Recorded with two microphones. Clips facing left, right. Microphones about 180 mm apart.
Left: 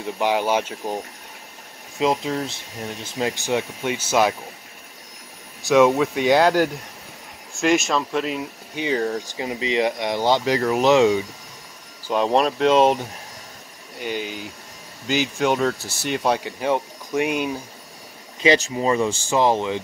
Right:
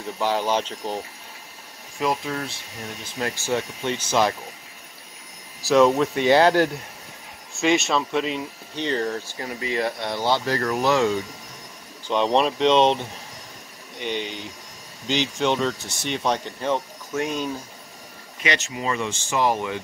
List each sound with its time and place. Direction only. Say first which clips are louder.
0.2 s speech: left 2 dB; 15° left (ahead or behind)
2.0 s speech: left 4 dB; 25° left (ahead or behind); by 4.4 s 5° left (ahead or behind)
5.9 s speech: left 1 dB; 10° left (ahead or behind)
9.3 s speech: left 4 dB; 20° left (ahead or behind)
12.1 s speech: left 1 dB; 5° left (ahead or behind)
18.4 s speech: left 8 dB; 30° left (ahead or behind)